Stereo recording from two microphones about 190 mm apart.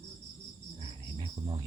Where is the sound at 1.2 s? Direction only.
20° right (ahead or behind).